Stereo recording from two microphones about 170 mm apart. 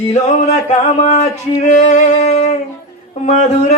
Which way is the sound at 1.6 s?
45° left (ahead or behind).